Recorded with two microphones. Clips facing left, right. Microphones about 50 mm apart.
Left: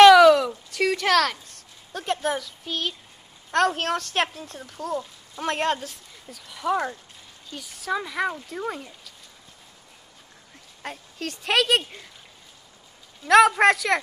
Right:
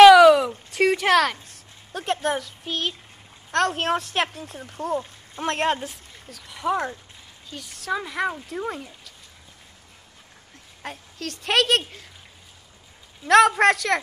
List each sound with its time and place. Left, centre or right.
0.0 s a sound: centre
0.4 s a sound: right
0.9 s a sound: centre
2.2 s speech: centre
3.8 s speech: centre
4.6 s speech: right
6.4 s speech: centre
10.8 s speech: centre
13.2 s speech: centre